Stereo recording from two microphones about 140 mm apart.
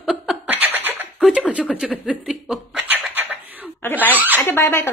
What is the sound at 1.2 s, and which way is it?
A woman's voice, 5° right (ahead or behind).